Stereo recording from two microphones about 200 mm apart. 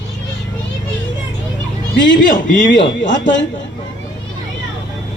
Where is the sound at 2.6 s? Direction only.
65° left (ahead or behind).